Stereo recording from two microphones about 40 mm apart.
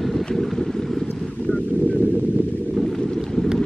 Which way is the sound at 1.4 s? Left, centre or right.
Left.